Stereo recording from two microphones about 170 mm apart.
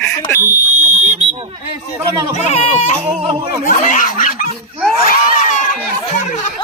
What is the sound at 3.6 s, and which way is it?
Snicker, 50° left (ahead or behind).